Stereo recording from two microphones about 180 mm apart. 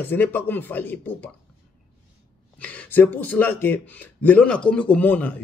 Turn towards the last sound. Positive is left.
turn(degrees=10)  # may be behind; listen again after turning